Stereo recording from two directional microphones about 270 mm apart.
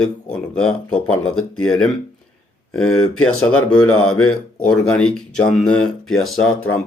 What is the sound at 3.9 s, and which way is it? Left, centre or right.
Speech, left.